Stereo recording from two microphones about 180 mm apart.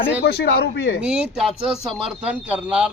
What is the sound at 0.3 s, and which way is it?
Speech, 65° left (ahead or behind).